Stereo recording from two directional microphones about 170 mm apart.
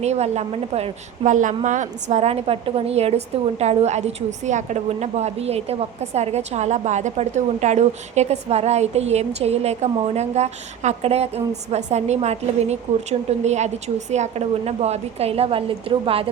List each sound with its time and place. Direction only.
0.0 s a woman's voice: 40° right (ahead or behind)